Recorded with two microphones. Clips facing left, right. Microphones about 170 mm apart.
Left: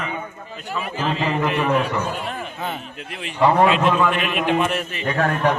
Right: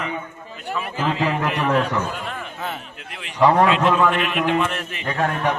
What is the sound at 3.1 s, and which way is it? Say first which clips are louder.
Speech: right 1 dB; 30° left (ahead or behind).